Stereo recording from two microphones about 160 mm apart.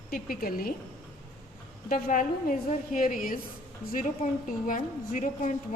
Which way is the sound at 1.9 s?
55° left (ahead or behind).